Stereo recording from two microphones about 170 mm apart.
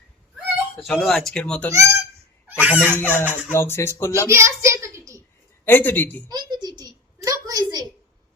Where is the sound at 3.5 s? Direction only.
15° left (ahead or behind).